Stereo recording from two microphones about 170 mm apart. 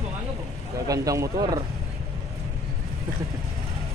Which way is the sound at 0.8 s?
20° right (ahead or behind).